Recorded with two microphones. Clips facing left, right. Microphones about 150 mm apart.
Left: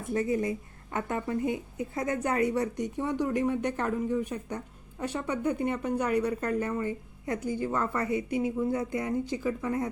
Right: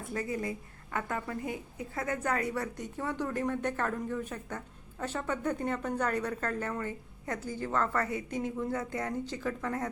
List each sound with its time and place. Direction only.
0.1 s a woman's voice: 25° left (ahead or behind)